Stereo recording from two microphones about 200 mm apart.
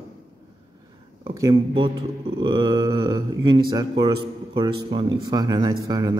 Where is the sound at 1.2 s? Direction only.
25° right (ahead or behind).